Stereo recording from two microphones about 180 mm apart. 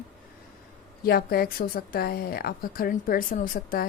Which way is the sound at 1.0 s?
55° left (ahead or behind).